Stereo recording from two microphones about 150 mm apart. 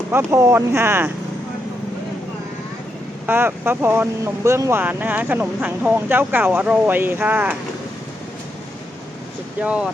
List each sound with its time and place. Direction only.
0.1 s speech: 15° right (ahead or behind)
3.2 s speech: 15° right (ahead or behind)
9.6 s speech: 5° right (ahead or behind)